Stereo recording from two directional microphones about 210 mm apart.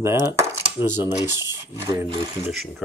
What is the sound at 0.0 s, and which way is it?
Speech, 15° right (ahead or behind).